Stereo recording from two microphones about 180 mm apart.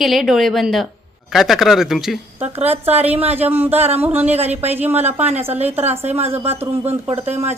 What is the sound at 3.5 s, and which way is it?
Speech, 10° right (ahead or behind).